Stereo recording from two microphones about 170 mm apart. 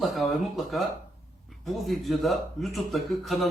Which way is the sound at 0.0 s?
Centre (ahead or behind).